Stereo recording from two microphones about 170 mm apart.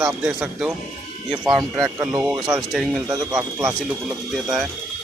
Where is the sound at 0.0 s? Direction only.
5° right (ahead or behind).